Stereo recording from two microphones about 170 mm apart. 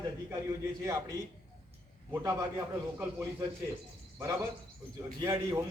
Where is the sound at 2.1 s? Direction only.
20° right (ahead or behind).